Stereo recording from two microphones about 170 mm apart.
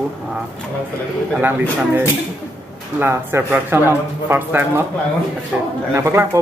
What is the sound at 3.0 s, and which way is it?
Speech, 15° right (ahead or behind).